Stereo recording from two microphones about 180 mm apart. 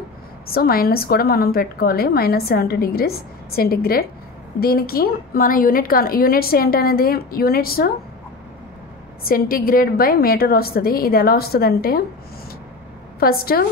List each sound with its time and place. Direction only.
0.5 s a woman's voice: 55° left (ahead or behind)
9.3 s a woman's voice: 55° left (ahead or behind)
13.2 s a woman's voice: 55° left (ahead or behind)